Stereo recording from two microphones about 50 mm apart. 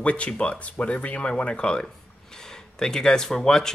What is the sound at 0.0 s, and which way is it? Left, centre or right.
Speech, left.